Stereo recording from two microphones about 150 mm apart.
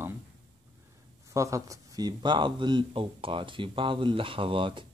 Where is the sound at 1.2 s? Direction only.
20° right (ahead or behind).